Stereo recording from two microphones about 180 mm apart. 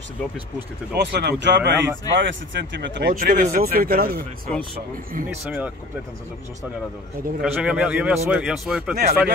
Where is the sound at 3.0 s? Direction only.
50° right (ahead or behind).